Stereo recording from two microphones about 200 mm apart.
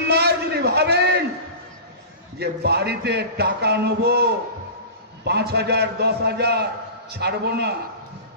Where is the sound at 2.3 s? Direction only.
55° right (ahead or behind).